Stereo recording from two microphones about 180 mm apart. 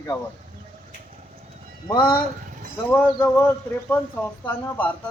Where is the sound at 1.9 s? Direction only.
25° left (ahead or behind).